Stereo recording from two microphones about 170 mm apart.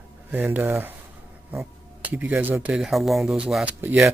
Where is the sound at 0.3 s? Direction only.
10° right (ahead or behind).